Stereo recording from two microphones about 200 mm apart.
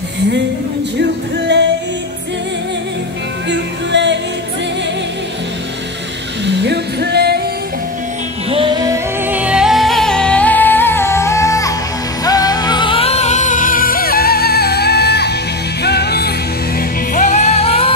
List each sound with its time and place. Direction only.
3.4 s music: 60° right (ahead or behind)
6.4 s music: 60° right (ahead or behind)
8.5 s music: 25° right (ahead or behind); by 16.3 s 55° left (ahead or behind)
17.1 s music: 40° left (ahead or behind)